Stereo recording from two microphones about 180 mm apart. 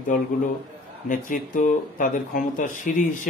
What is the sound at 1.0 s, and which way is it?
Speech, 45° left (ahead or behind).